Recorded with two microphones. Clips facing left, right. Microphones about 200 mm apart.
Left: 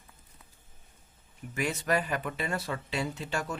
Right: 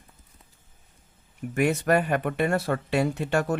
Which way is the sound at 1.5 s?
65° right (ahead or behind).